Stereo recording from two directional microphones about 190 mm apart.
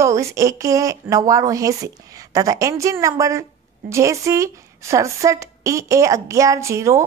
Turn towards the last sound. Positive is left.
turn(degrees=-15)  # may be behind; listen again after turning